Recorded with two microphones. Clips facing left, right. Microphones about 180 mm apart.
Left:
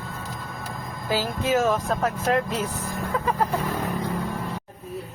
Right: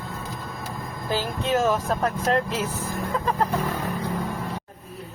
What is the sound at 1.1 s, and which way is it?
Speech, centre (ahead or behind).